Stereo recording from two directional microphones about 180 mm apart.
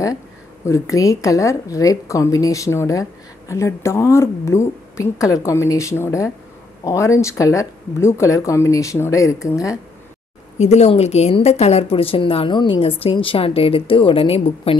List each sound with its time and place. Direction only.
0.7 s a woman's voice: 15° left (ahead or behind)
10.6 s a woman's voice: 40° left (ahead or behind)